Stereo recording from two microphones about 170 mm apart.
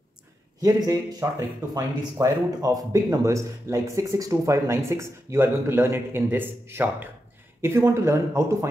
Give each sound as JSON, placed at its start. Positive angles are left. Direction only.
{"t": 0.6, "sound": "speech", "side_deg": -20}